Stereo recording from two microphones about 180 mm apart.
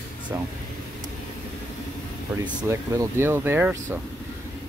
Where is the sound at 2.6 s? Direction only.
15° right (ahead or behind).